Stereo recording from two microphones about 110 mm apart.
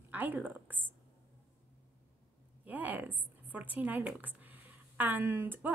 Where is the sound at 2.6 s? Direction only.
15° right (ahead or behind).